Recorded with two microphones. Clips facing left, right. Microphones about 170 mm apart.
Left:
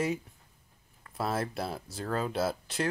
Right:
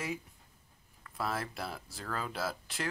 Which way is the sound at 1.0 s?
25° left (ahead or behind).